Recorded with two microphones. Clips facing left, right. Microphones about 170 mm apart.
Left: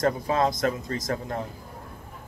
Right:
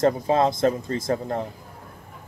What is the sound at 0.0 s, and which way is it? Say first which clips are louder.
Speech: right 4 dB; 25° right (ahead or behind).